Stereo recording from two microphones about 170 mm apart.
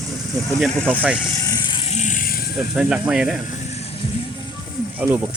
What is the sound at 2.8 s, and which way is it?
Speech, 5° right (ahead or behind).